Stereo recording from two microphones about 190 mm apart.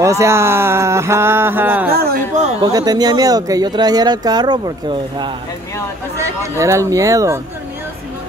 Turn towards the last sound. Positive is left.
turn(degrees=-15)  # may be behind; listen again after turning